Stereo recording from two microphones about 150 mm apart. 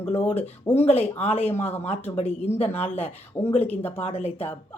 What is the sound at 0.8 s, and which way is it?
Female singing, 40° left (ahead or behind).